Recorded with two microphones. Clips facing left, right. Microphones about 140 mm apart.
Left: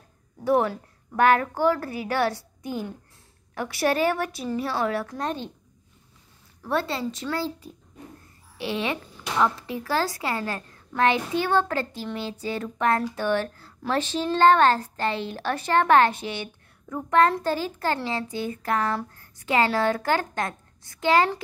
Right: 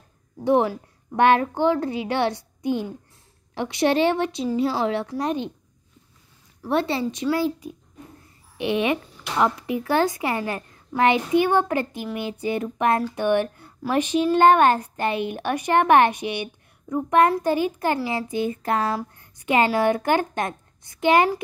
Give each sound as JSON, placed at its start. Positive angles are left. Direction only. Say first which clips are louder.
{"t": 0.4, "sound": "a woman's voice", "louder": "right 2 dB", "side_deg": -25}
{"t": 6.6, "sound": "speech", "louder": "right 4 dB", "side_deg": -20}
{"t": 8.5, "sound": "speech", "louder": "right 6 dB", "side_deg": -20}